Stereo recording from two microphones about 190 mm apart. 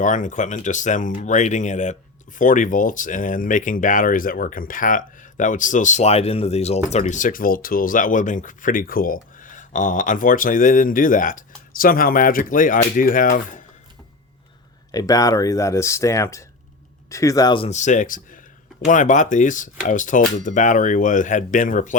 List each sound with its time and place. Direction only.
0.0 s speech: 40° left (ahead or behind)
14.9 s speech: 20° left (ahead or behind); by 21.9 s 45° left (ahead or behind)